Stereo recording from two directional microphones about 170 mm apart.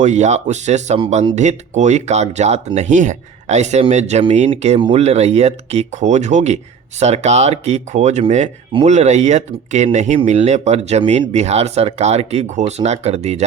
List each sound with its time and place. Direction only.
0.0 s speech: 45° right (ahead or behind)